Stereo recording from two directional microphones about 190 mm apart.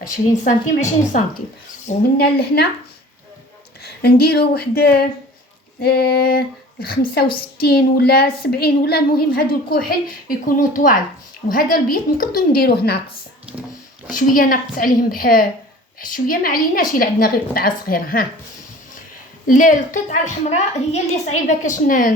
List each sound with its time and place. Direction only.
0.4 s a woman's voice: 40° left (ahead or behind)
2.1 s speech: 55° left (ahead or behind)
3.8 s a woman's voice: 55° left (ahead or behind)
14.1 s a woman's voice: 45° left (ahead or behind)
19.5 s a woman's voice: 45° left (ahead or behind)